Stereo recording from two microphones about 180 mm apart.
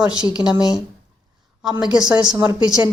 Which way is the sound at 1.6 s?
5° right (ahead or behind).